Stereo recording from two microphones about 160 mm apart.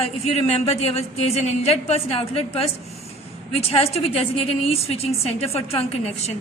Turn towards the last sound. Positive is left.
turn(degrees=40)  # may be behind; listen again after turning